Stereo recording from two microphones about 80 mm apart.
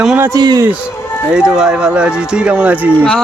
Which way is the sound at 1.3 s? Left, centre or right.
Centre.